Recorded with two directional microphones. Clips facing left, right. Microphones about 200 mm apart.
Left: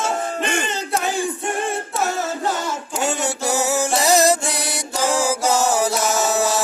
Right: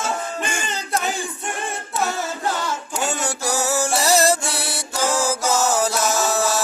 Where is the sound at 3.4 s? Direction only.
20° left (ahead or behind).